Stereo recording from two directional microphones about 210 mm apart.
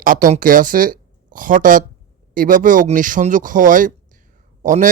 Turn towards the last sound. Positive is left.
turn(degrees=-40)  # may be behind; listen again after turning